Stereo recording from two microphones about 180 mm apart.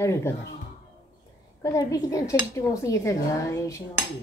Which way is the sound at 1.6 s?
20° left (ahead or behind).